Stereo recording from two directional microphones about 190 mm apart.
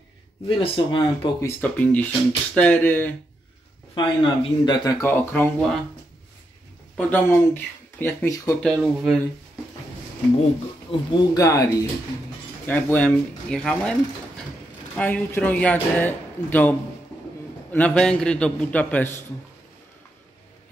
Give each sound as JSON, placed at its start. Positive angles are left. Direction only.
{"t": 0.5, "sound": "speech", "side_deg": 30}
{"t": 1.4, "sound": "speech", "side_deg": 10}
{"t": 3.9, "sound": "speech", "side_deg": 25}
{"t": 7.0, "sound": "speech", "side_deg": 10}
{"t": 8.6, "sound": "speech", "side_deg": 0}
{"t": 10.9, "sound": "speech", "side_deg": 15}
{"t": 12.6, "sound": "speech", "side_deg": 5}
{"t": 15.0, "sound": "speech", "side_deg": 10}